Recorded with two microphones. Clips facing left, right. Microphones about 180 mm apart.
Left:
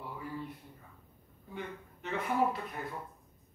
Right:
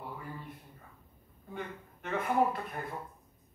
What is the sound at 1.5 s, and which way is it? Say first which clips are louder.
Speech: right 1 dB; 50° right (ahead or behind).